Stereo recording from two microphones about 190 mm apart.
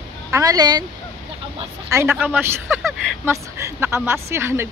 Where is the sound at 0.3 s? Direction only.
20° right (ahead or behind).